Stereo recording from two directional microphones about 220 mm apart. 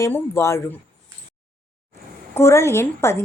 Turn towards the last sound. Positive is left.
turn(degrees=10)  # may be behind; listen again after turning